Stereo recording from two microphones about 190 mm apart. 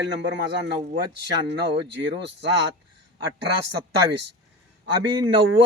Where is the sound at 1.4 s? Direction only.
65° right (ahead or behind).